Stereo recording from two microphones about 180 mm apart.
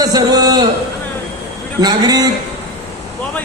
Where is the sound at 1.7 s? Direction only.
20° right (ahead or behind).